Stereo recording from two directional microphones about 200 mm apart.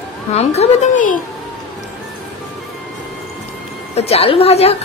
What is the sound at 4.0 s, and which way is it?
Speech, 30° left (ahead or behind).